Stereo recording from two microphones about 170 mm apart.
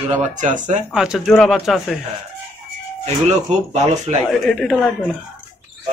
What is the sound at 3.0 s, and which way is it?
Speech, 40° right (ahead or behind).